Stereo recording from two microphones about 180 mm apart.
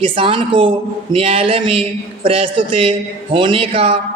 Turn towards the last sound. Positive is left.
turn(degrees=-30)  # may be behind; listen again after turning